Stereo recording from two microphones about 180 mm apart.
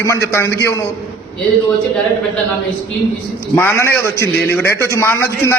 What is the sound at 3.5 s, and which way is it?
A man's voice, 10° left (ahead or behind).